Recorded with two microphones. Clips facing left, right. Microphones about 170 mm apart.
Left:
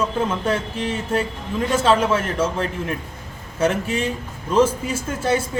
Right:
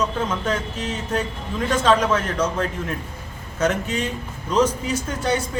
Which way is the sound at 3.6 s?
10° left (ahead or behind).